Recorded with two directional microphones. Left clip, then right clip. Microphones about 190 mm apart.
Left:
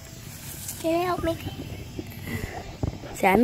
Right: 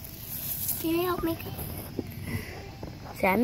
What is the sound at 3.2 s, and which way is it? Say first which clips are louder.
Speech: left 5 dB; 25° left (ahead or behind).